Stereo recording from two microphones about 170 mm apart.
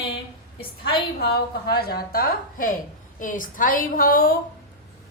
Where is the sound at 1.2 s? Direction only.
65° left (ahead or behind).